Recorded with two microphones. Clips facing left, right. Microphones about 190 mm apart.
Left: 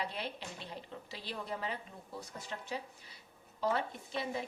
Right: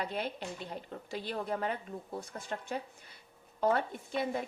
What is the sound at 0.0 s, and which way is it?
A woman's voice, 50° right (ahead or behind).